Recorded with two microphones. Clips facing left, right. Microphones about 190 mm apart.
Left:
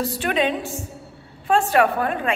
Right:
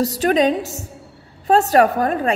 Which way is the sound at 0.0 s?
40° right (ahead or behind).